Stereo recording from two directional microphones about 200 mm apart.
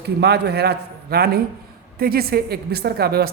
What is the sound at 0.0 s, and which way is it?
A man's voice, 55° right (ahead or behind).